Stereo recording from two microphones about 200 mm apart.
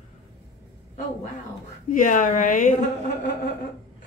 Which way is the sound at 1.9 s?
40° left (ahead or behind).